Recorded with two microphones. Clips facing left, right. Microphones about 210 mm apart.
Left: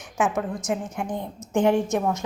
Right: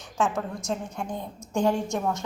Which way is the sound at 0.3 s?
Centre (ahead or behind).